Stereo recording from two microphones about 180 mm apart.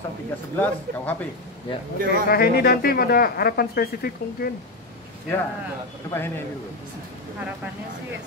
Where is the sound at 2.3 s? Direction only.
60° left (ahead or behind).